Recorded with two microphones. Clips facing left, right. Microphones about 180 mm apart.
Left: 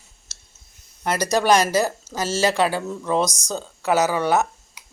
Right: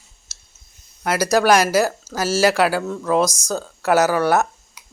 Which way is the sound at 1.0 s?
5° right (ahead or behind).